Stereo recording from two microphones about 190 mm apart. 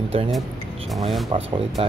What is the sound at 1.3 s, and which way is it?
Speech, 35° right (ahead or behind).